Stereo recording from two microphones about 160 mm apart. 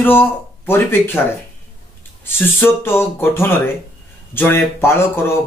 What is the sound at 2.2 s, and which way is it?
Speech, 15° left (ahead or behind).